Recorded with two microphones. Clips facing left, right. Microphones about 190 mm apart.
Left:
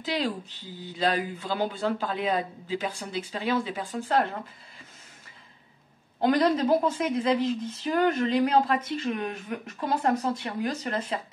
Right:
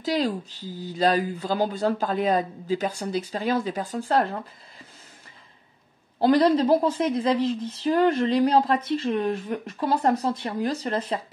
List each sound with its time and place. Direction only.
0.0 s a woman's voice: 40° right (ahead or behind)
6.1 s a woman's voice: 35° right (ahead or behind)